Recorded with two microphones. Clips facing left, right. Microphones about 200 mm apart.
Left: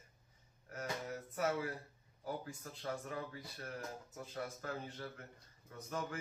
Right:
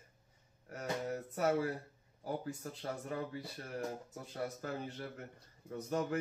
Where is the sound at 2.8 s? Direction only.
30° right (ahead or behind).